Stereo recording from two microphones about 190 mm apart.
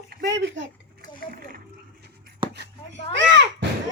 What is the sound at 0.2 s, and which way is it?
Speech, 65° right (ahead or behind).